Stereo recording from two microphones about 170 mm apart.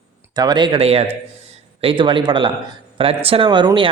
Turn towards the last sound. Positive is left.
turn(degrees=-30)  # may be behind; listen again after turning